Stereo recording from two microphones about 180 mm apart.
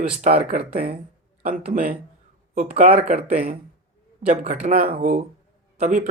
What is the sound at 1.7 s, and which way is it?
Speech, 50° right (ahead or behind).